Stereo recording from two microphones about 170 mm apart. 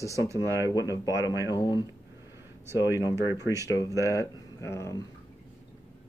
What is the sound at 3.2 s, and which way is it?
Speech, 20° left (ahead or behind).